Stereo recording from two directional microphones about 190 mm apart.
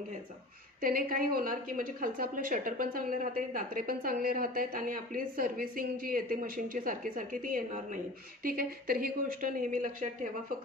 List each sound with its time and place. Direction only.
0.7 s a woman's voice: 50° right (ahead or behind)